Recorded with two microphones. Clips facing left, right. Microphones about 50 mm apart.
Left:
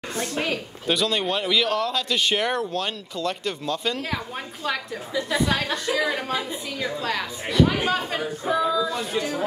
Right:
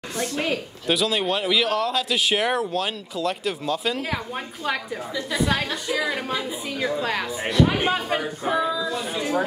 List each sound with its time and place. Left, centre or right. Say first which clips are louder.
0.1 s a woman's voice: right 2 dB; left
0.4 s speech: right 1 dB; centre
8.6 s speech: left 2 dB; centre